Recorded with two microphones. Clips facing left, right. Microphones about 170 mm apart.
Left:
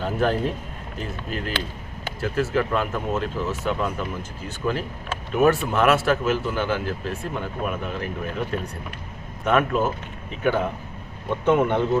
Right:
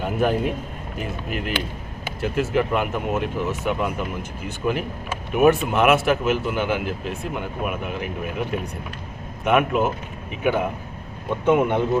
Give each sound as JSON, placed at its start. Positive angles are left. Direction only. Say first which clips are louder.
{"t": 0.0, "sound": "speech", "louder": "right 1 dB", "side_deg": -10}